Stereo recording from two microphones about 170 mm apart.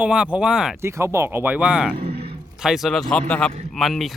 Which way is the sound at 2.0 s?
35° right (ahead or behind).